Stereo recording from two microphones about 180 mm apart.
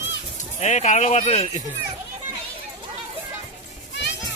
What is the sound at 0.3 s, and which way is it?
Speech, 40° left (ahead or behind).